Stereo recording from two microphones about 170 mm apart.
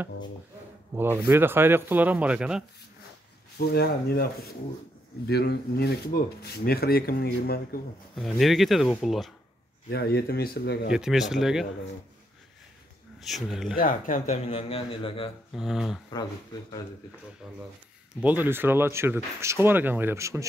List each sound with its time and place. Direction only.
0.9 s speech: 10° right (ahead or behind)
3.5 s speech: 70° left (ahead or behind)
8.2 s speech: centre (ahead or behind)
9.8 s speech: 65° left (ahead or behind)
10.9 s speech: 5° right (ahead or behind)
13.2 s speech: centre (ahead or behind)
13.7 s speech: 55° left (ahead or behind); by 15.3 s 30° left (ahead or behind)
15.5 s speech: centre (ahead or behind)
18.2 s speech: 10° right (ahead or behind)